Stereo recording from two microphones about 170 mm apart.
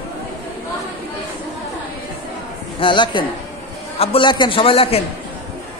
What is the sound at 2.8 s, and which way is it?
A man's voice, 30° left (ahead or behind).